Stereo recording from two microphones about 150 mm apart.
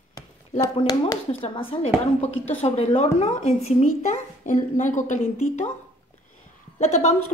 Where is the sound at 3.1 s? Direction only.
50° left (ahead or behind).